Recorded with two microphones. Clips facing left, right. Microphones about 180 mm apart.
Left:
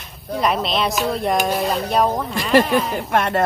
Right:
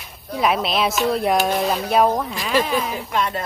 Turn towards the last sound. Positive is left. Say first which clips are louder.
# left 5 dB
turn(degrees=65)  # may be behind; listen again after turning